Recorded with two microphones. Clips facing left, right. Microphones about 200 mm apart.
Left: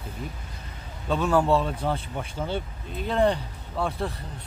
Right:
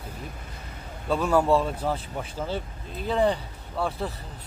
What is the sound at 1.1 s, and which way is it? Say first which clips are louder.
Speech: even; 10° right (ahead or behind).